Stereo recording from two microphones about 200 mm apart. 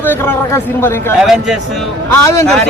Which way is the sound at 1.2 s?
Centre (ahead or behind).